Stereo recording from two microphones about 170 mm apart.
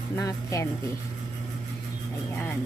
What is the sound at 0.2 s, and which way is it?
Speech, 20° left (ahead or behind).